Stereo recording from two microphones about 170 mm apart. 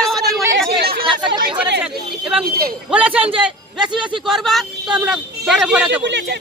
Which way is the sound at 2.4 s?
60° right (ahead or behind).